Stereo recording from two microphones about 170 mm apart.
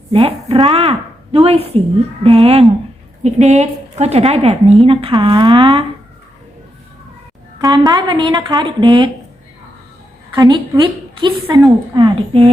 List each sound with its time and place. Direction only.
0.1 s a woman's voice: 35° right (ahead or behind)
7.6 s a woman's voice: 25° right (ahead or behind)
10.3 s a woman's voice: 25° right (ahead or behind)